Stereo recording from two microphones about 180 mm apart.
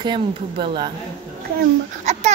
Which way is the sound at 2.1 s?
40° right (ahead or behind).